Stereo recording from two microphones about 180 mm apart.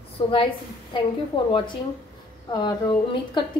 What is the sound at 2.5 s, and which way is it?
Speech, 25° left (ahead or behind).